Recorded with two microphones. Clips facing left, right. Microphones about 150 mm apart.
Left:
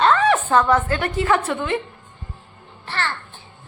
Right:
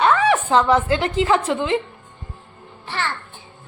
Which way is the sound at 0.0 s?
10° right (ahead or behind).